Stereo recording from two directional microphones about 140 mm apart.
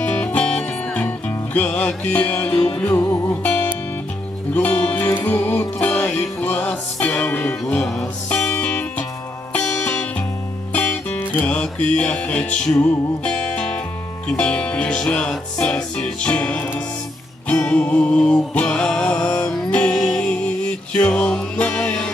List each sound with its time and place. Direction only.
0.2 s music: 5° left (ahead or behind)